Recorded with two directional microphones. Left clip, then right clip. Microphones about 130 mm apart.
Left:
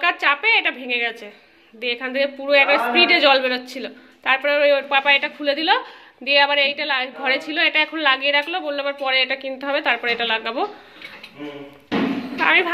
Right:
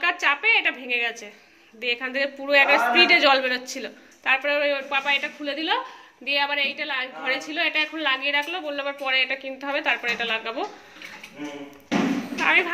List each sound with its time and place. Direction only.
0.0 s a man's voice: 30° left (ahead or behind)
4.3 s a woman's voice: 35° left (ahead or behind)
12.4 s speech: 30° left (ahead or behind)